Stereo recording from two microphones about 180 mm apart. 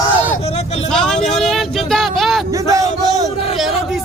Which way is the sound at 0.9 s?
5° left (ahead or behind).